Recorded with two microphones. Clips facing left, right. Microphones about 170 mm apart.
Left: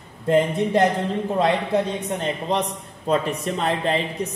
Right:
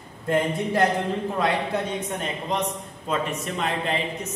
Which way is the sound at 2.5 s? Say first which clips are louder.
Left 3 dB; 35° left (ahead or behind).